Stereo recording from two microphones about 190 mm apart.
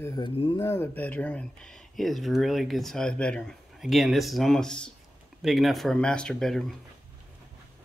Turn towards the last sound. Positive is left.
turn(degrees=0)  # may be behind; listen again after turning